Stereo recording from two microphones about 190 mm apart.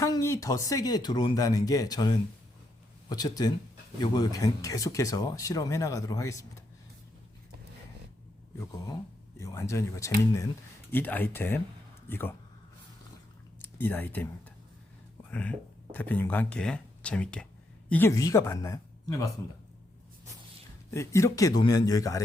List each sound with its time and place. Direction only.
0.0 s speech: 20° left (ahead or behind)
9.4 s a man's voice: 15° left (ahead or behind)
13.6 s speech: 10° left (ahead or behind)
20.9 s a man's voice: 15° left (ahead or behind)